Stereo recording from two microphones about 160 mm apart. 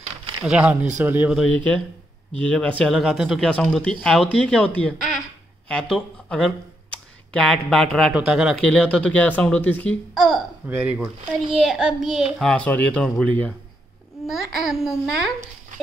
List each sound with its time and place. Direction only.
0.5 s speech: 10° right (ahead or behind)
1.4 s speech: 10° left (ahead or behind)
10.7 s speech: 10° right (ahead or behind)
12.4 s speech: 10° left (ahead or behind)